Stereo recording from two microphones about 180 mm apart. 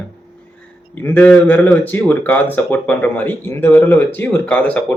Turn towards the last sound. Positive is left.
turn(degrees=10)  # may be behind; listen again after turning